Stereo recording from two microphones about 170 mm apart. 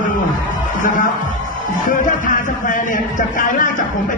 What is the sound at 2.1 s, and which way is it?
Speech, 50° left (ahead or behind).